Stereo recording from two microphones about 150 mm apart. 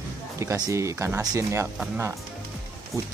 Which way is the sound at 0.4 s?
20° right (ahead or behind).